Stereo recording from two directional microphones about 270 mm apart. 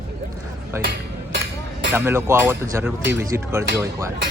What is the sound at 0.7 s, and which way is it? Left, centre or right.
Speech, centre.